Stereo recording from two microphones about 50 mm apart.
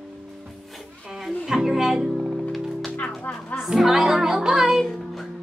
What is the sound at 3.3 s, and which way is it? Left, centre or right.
Music, left.